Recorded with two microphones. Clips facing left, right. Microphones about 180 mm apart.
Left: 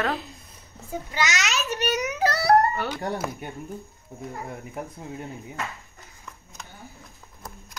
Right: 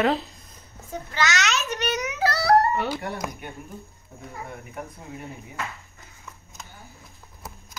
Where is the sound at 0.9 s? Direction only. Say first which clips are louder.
Right 1 dB; 15° left (ahead or behind).